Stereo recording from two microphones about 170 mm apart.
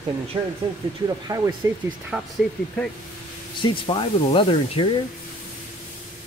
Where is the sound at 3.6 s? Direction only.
30° left (ahead or behind).